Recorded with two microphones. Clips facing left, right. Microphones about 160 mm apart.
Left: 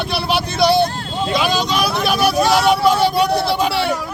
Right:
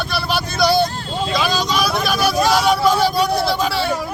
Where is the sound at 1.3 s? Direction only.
20° left (ahead or behind).